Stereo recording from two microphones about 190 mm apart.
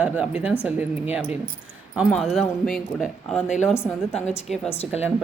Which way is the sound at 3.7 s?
15° left (ahead or behind).